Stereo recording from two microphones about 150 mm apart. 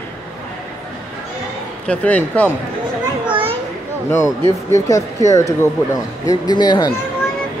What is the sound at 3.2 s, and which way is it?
Children playing, 35° right (ahead or behind).